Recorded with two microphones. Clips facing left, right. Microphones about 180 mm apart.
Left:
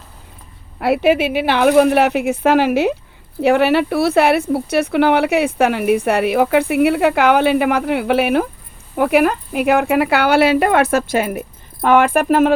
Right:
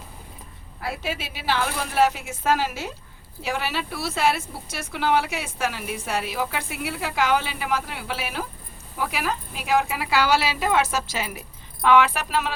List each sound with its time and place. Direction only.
0.8 s speech: 65° left (ahead or behind)